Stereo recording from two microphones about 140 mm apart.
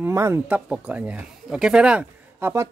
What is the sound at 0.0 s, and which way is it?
Speech, 20° right (ahead or behind).